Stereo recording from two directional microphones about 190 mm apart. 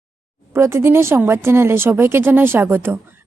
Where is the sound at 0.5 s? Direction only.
15° right (ahead or behind).